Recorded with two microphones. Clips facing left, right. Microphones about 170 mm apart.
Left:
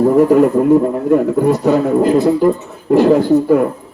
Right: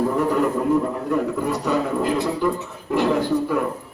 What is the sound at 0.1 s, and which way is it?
A man's voice, 55° left (ahead or behind).